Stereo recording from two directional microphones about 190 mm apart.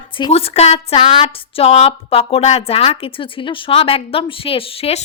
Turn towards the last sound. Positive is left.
turn(degrees=30)  # may be behind; listen again after turning